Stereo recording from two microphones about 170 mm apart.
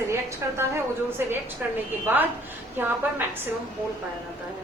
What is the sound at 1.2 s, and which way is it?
Speech, 15° right (ahead or behind).